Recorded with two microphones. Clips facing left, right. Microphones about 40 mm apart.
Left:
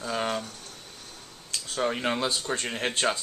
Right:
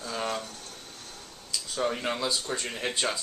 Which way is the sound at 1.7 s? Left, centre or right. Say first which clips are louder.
Left 2 dB; left.